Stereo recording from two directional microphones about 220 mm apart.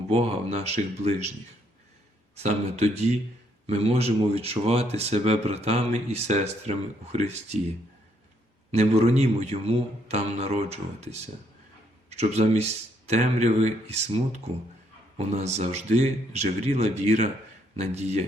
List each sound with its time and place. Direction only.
0.1 s speech: 30° right (ahead or behind)
2.4 s speech: 30° right (ahead or behind)
8.7 s speech: 30° right (ahead or behind)